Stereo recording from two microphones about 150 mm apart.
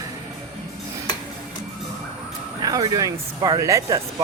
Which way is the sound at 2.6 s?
25° right (ahead or behind).